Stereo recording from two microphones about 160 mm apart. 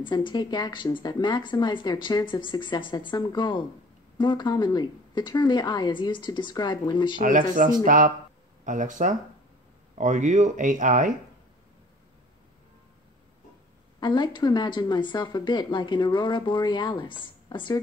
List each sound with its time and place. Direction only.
0.0 s speech: 30° left (ahead or behind)
7.2 s speech: 55° right (ahead or behind)
13.9 s speech: 30° left (ahead or behind)